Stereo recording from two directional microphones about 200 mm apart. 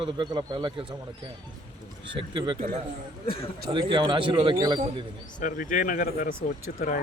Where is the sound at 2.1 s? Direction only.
25° right (ahead or behind).